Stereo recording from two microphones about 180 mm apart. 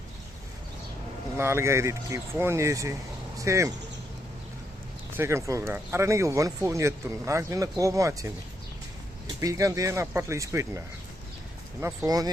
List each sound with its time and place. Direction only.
1.4 s speech: 15° right (ahead or behind)
5.1 s speech: 15° right (ahead or behind)
9.4 s speech: 20° right (ahead or behind)
11.8 s speech: 15° right (ahead or behind)